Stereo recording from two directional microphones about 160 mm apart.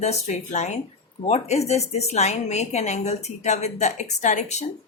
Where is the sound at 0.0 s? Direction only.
45° left (ahead or behind).